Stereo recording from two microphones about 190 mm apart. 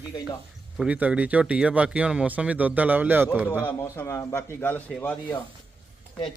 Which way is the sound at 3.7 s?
15° left (ahead or behind).